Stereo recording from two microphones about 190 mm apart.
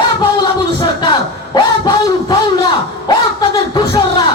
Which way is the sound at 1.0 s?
25° left (ahead or behind).